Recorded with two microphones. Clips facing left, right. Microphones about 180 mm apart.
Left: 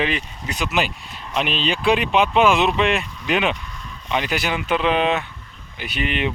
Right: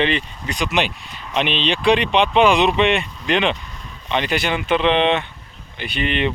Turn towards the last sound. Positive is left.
turn(degrees=5)  # may be behind; listen again after turning